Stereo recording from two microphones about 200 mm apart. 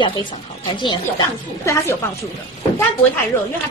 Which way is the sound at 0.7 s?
25° left (ahead or behind).